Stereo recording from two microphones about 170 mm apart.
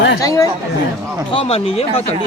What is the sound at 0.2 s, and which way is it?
Speech, 20° left (ahead or behind).